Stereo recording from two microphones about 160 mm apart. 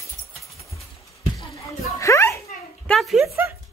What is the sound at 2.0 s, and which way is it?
Speech, 20° left (ahead or behind).